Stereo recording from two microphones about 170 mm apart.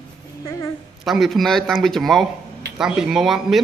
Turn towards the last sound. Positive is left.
turn(degrees=0)  # may be behind; listen again after turning